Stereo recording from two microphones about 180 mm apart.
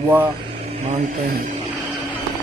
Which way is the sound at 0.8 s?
40° right (ahead or behind).